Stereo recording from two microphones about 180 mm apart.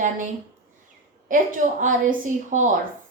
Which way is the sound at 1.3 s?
45° right (ahead or behind).